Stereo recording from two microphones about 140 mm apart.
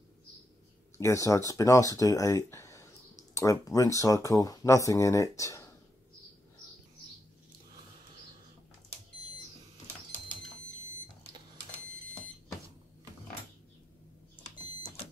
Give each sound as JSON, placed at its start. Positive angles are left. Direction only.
{"t": 0.9, "sound": "speech", "side_deg": 20}